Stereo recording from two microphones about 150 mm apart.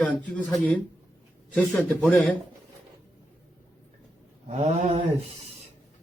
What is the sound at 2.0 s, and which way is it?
Speech, 10° left (ahead or behind).